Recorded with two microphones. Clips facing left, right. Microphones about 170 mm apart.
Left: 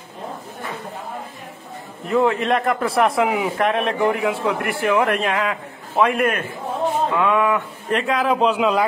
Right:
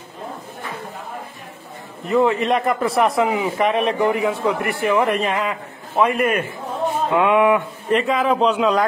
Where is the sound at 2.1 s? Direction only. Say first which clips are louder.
Right 1 dB; centre (ahead or behind).